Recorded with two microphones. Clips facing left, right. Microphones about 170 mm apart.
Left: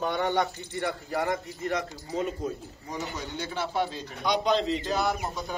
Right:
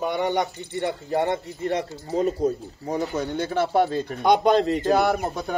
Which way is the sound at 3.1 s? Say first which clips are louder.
Right 9 dB; 55° right (ahead or behind).